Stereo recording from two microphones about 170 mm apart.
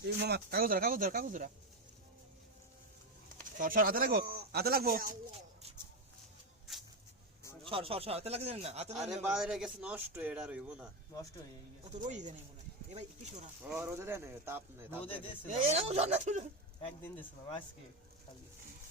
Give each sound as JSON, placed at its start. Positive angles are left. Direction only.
{"t": 0.0, "sound": "speech", "side_deg": -80}
{"t": 3.6, "sound": "speech", "side_deg": -55}
{"t": 7.6, "sound": "speech", "side_deg": -30}
{"t": 8.9, "sound": "a man's voice", "side_deg": -5}
{"t": 12.0, "sound": "speech", "side_deg": -45}
{"t": 13.7, "sound": "speech", "side_deg": -15}
{"t": 15.4, "sound": "speech", "side_deg": -40}